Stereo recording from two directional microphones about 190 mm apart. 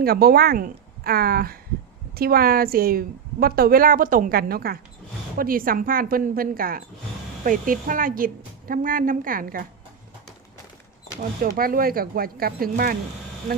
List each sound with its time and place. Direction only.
0.0 s a woman's voice: 55° right (ahead or behind)
11.2 s a woman's voice: 45° right (ahead or behind)